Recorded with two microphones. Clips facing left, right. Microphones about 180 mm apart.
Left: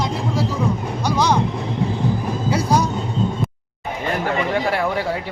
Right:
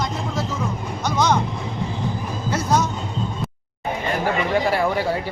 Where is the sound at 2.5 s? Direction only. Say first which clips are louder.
Left 3 dB; 10° left (ahead or behind).